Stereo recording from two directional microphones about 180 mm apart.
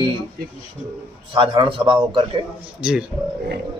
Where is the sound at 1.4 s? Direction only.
30° right (ahead or behind).